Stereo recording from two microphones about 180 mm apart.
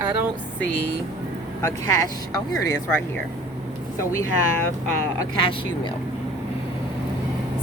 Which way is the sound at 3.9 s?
15° left (ahead or behind).